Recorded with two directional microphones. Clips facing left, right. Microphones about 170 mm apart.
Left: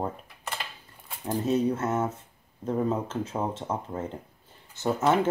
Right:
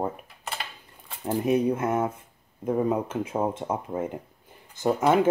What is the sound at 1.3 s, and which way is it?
Speech, 15° right (ahead or behind).